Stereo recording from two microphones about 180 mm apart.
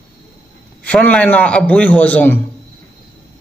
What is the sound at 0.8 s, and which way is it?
Speech, 5° left (ahead or behind).